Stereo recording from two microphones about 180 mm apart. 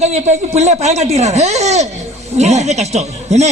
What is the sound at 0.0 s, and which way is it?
Speech, 40° right (ahead or behind).